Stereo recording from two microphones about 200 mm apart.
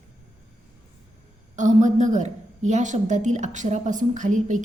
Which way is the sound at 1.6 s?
40° right (ahead or behind).